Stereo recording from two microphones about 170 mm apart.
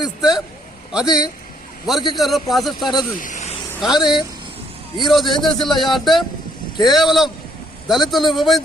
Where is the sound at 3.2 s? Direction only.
45° left (ahead or behind).